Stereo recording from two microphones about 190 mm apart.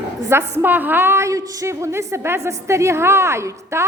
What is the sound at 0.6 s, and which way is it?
A woman's voice, 10° right (ahead or behind).